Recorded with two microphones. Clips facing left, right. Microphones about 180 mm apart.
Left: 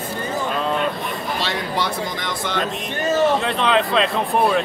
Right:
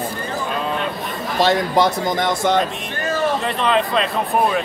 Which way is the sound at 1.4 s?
45° right (ahead or behind).